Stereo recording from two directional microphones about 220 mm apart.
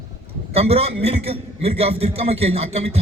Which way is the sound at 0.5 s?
25° right (ahead or behind).